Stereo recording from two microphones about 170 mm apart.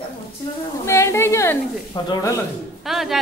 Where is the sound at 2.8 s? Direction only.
Centre (ahead or behind).